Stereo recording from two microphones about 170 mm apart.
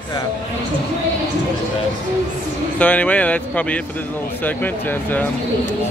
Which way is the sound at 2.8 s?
10° left (ahead or behind).